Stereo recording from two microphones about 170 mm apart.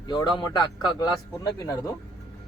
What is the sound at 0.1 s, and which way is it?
A man's voice, 25° left (ahead or behind).